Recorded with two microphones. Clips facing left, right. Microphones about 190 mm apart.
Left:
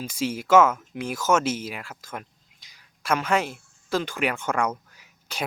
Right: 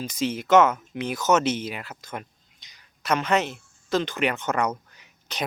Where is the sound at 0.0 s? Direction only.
5° left (ahead or behind).